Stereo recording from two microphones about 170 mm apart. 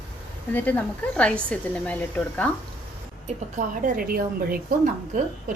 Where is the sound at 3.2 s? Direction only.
50° right (ahead or behind).